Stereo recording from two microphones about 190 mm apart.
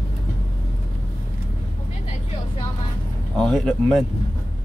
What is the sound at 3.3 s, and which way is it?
Speech, 5° left (ahead or behind).